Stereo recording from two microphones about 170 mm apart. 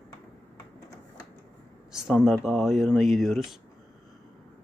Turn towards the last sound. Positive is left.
turn(degrees=0)  # may be behind; listen again after turning